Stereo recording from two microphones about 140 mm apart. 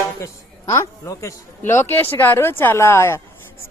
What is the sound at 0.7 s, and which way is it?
Speech, 25° left (ahead or behind).